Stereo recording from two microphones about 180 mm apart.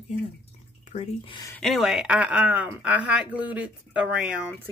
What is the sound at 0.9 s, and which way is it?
Speech, 40° left (ahead or behind).